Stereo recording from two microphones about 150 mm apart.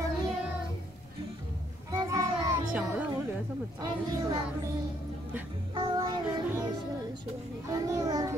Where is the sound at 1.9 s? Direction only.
20° right (ahead or behind).